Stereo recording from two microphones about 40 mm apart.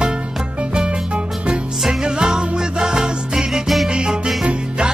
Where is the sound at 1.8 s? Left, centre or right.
Centre.